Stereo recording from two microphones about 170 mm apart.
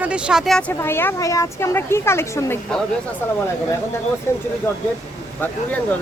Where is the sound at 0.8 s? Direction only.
15° left (ahead or behind).